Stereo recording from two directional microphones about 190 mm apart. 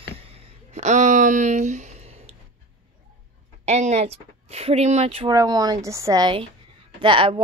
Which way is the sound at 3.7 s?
35° right (ahead or behind).